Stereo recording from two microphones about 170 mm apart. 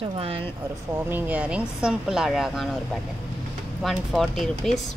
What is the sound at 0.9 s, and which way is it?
Speech, 10° right (ahead or behind).